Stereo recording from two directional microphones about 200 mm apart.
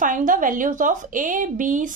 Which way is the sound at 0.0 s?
40° right (ahead or behind).